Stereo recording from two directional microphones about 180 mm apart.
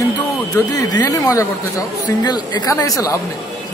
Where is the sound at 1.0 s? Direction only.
20° left (ahead or behind).